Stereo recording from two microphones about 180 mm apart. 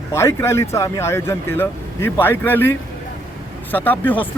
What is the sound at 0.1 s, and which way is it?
Speech, 15° left (ahead or behind).